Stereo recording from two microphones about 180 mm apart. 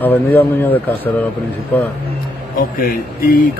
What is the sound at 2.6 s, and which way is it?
Speech, 55° left (ahead or behind).